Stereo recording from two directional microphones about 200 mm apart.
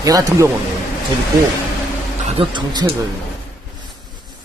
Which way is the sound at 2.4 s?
25° right (ahead or behind).